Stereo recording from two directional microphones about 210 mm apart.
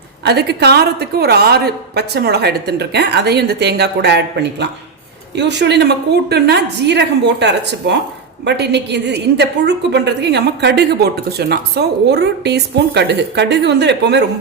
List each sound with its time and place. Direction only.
0.3 s a woman's voice: 50° right (ahead or behind)
5.4 s a woman's voice: 55° right (ahead or behind)